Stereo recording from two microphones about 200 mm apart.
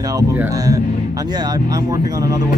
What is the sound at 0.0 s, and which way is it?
Speech, 15° right (ahead or behind).